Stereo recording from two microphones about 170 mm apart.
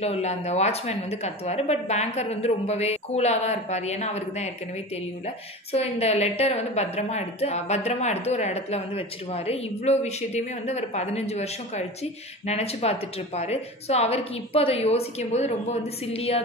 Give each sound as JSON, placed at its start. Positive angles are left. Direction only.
{"t": 0.0, "sound": "a woman's voice", "side_deg": 40}